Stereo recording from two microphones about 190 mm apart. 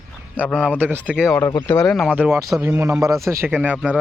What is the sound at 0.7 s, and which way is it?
Speech, 10° right (ahead or behind).